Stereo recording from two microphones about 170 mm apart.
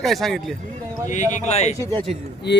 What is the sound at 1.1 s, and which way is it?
Speech, 45° left (ahead or behind).